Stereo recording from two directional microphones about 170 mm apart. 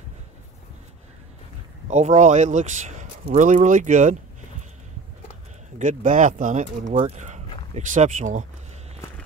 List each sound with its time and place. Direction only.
1.9 s speech: 45° right (ahead or behind)
5.8 s speech: 50° right (ahead or behind)